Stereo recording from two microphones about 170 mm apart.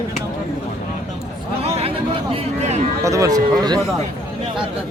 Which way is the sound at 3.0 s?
20° right (ahead or behind).